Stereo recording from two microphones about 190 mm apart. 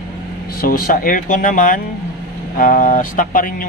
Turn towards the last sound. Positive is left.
turn(degrees=45)  # may be behind; listen again after turning